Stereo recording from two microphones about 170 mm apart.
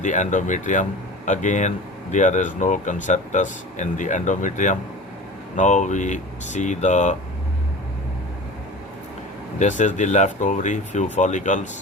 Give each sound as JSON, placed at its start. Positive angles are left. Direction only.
{"t": 0.0, "sound": "speech", "side_deg": 45}
{"t": 9.6, "sound": "speech", "side_deg": 45}